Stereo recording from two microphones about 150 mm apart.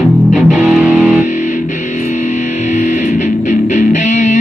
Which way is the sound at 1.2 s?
55° left (ahead or behind).